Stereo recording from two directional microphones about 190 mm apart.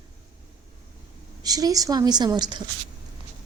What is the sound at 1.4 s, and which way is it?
A woman's voice, 20° right (ahead or behind).